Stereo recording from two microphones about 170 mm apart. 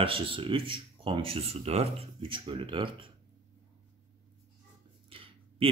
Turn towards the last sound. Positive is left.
turn(degrees=-35)  # may be behind; listen again after turning